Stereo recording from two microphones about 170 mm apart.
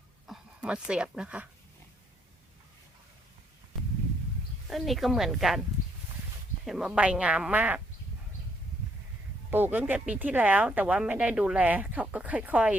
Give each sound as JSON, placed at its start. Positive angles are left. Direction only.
{"t": 0.3, "sound": "speech", "side_deg": -5}
{"t": 4.7, "sound": "speech", "side_deg": 0}
{"t": 6.7, "sound": "speech", "side_deg": -5}
{"t": 9.5, "sound": "speech", "side_deg": -10}